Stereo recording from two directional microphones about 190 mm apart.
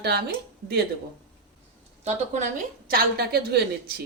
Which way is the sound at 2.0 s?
40° right (ahead or behind).